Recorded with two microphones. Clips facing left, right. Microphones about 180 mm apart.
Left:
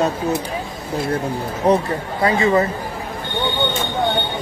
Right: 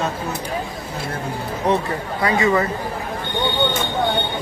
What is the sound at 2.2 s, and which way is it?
Speech, 25° left (ahead or behind).